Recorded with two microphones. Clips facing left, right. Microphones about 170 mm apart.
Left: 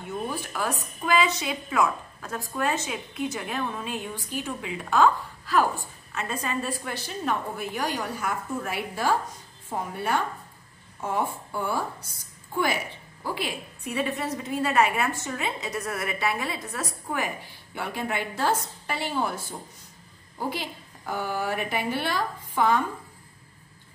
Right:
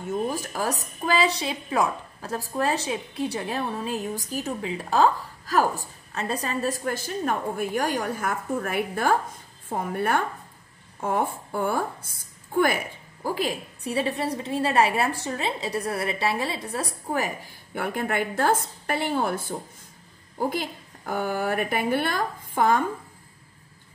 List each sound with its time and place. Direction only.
0.0 s a woman's voice: 40° right (ahead or behind)
17.7 s a woman's voice: 50° right (ahead or behind)